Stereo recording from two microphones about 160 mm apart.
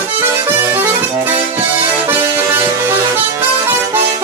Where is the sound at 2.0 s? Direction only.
15° right (ahead or behind).